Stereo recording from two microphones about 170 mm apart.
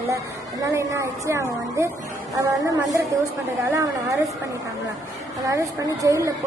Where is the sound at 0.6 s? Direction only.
20° right (ahead or behind).